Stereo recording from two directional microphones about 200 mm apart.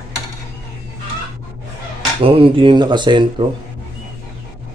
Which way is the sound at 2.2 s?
25° right (ahead or behind).